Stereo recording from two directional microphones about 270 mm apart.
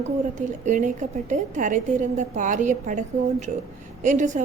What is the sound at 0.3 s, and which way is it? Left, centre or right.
A woman's voice, right.